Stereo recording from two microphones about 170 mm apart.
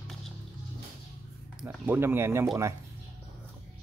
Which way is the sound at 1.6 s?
10° right (ahead or behind).